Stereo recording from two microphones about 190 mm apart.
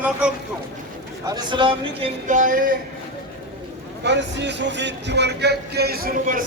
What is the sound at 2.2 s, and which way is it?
Speech, 40° right (ahead or behind).